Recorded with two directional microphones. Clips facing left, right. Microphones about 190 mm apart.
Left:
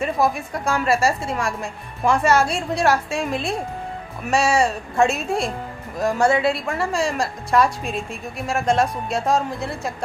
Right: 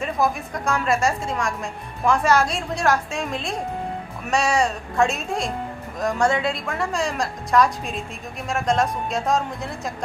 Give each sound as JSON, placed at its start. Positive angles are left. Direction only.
{"t": 0.0, "sound": "speech", "side_deg": 5}